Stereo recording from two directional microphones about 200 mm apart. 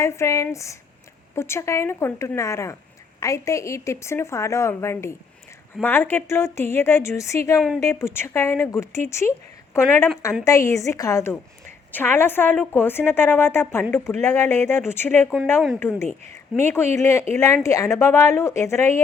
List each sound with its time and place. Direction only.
0.0 s a woman's voice: 15° left (ahead or behind)
16.6 s a woman's voice: 10° left (ahead or behind)